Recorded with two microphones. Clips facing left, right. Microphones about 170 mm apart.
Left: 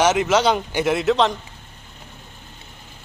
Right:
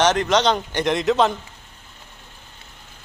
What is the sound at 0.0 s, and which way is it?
A man's voice, 5° left (ahead or behind).